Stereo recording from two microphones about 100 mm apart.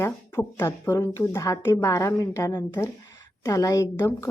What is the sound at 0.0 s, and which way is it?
A woman's voice, 25° left (ahead or behind).